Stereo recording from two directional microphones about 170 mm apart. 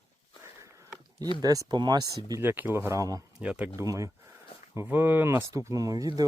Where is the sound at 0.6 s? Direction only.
20° right (ahead or behind).